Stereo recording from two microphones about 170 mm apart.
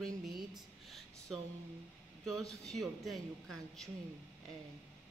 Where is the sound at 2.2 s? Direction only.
Centre (ahead or behind).